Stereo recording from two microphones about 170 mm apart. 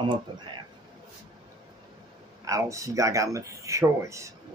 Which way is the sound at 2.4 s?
20° right (ahead or behind).